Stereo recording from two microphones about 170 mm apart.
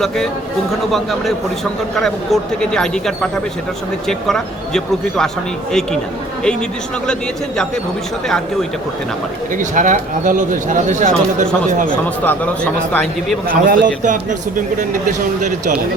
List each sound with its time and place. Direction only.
0.9 s speech: centre (ahead or behind)
7.1 s speech: 5° left (ahead or behind)
9.6 s speech: 50° right (ahead or behind)
12.0 s a man's voice: 10° left (ahead or behind)
13.7 s speech: 50° right (ahead or behind)